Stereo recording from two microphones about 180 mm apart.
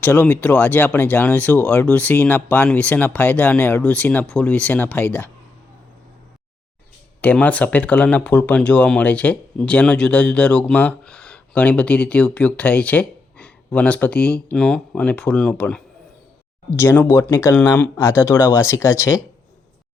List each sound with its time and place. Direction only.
0.0 s speech: 10° left (ahead or behind)
7.2 s speech: 10° left (ahead or behind)